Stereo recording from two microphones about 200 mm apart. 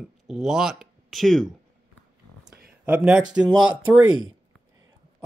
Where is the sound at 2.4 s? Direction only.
50° right (ahead or behind).